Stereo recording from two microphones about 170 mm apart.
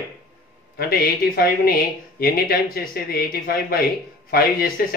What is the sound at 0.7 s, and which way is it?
Speech, 60° left (ahead or behind).